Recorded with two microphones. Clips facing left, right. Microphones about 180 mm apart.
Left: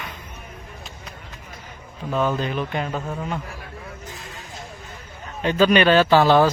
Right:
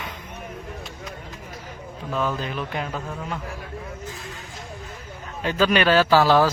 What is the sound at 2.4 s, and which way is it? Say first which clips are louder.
Speech: left 3 dB; centre (ahead or behind).